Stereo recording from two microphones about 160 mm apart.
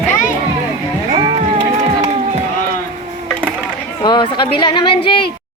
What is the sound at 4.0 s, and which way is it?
A woman's voice, 30° left (ahead or behind).